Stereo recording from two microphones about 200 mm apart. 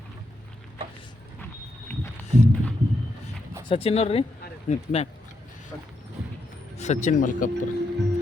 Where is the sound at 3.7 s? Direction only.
30° left (ahead or behind).